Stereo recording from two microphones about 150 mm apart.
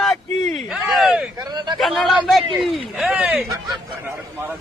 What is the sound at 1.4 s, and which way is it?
Speech, 25° right (ahead or behind).